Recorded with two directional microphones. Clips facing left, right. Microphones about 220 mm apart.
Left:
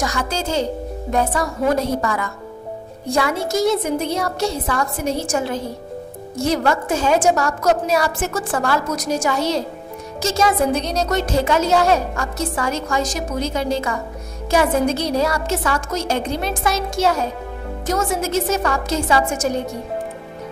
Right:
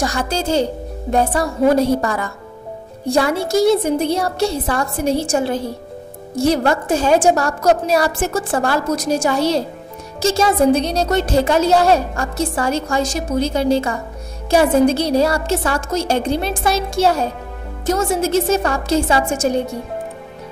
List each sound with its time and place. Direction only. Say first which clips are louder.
0.0 s a woman's voice: right 3 dB; 30° right (ahead or behind)